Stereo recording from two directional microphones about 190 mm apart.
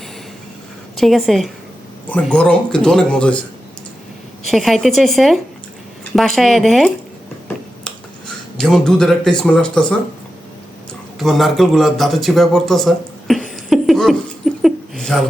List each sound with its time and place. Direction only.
0.9 s speech: centre (ahead or behind)
4.4 s speech: centre (ahead or behind)
8.5 s speech: 5° left (ahead or behind)
11.2 s a man's voice: centre (ahead or behind)